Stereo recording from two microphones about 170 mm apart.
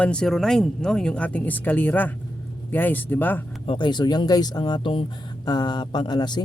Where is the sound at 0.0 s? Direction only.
5° left (ahead or behind).